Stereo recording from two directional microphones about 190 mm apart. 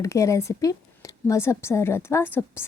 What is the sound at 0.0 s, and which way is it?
A woman's voice, 15° left (ahead or behind).